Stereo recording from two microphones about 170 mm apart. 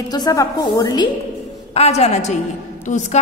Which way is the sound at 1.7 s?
40° left (ahead or behind).